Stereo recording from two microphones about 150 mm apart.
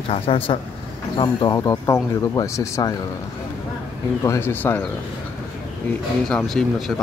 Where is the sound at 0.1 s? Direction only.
40° left (ahead or behind); by 2.9 s 20° left (ahead or behind).